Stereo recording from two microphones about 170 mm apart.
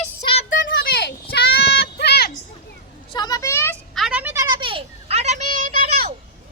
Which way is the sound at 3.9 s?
Centre (ahead or behind).